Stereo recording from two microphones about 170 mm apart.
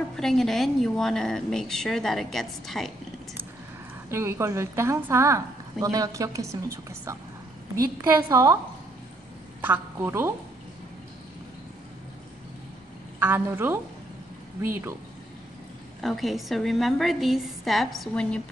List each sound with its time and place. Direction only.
0.2 s a woman's voice: centre (ahead or behind)
4.1 s a woman's voice: 15° right (ahead or behind)
9.6 s a woman's voice: 15° right (ahead or behind)
13.2 s a woman's voice: 10° right (ahead or behind)
16.0 s a woman's voice: centre (ahead or behind)